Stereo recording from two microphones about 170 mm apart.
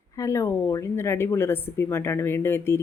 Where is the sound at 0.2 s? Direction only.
20° left (ahead or behind).